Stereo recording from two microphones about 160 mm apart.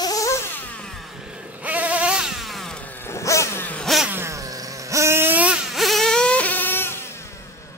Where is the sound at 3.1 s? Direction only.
20° left (ahead or behind); by 4.1 s centre (ahead or behind).